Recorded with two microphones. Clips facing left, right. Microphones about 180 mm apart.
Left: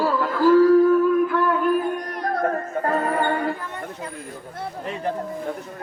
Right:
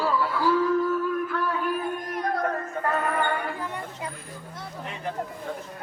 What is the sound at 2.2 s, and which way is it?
Music, 50° left (ahead or behind).